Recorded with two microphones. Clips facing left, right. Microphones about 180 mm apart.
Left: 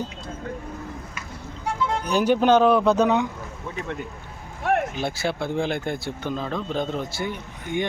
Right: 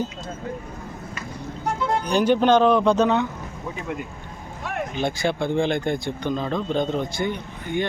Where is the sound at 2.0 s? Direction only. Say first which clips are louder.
Even; 10° left (ahead or behind).